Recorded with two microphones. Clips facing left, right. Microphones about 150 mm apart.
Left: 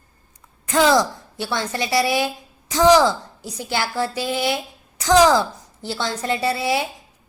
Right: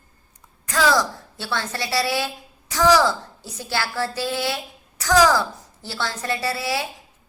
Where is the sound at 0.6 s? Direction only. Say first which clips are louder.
Left 3 dB; 20° left (ahead or behind).